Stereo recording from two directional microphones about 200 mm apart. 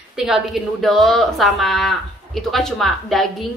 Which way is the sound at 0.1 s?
Centre (ahead or behind).